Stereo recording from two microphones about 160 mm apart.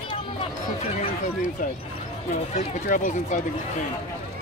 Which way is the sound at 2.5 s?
45° left (ahead or behind).